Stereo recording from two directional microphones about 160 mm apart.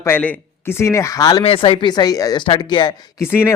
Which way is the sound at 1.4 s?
35° left (ahead or behind).